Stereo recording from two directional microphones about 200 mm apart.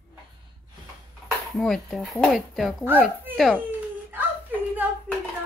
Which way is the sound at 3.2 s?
5° right (ahead or behind).